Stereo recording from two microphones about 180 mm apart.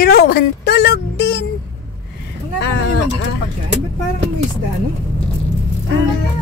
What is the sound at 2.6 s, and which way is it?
Speech, 70° left (ahead or behind).